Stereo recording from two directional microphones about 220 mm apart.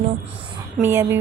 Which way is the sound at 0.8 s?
10° right (ahead or behind).